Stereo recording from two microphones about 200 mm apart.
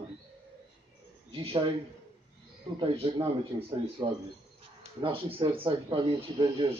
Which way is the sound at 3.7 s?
25° right (ahead or behind).